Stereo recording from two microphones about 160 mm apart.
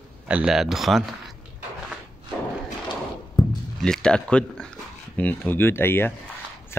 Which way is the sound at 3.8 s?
5° left (ahead or behind).